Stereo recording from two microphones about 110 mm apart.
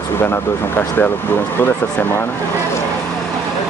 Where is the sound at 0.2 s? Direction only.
20° left (ahead or behind).